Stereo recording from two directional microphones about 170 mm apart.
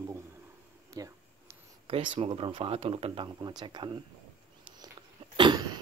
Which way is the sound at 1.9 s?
35° right (ahead or behind).